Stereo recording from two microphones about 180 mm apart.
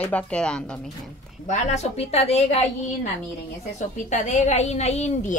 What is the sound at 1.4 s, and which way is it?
A woman's voice, 40° left (ahead or behind).